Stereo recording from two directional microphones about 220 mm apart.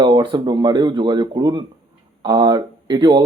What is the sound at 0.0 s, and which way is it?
Speech, 20° right (ahead or behind).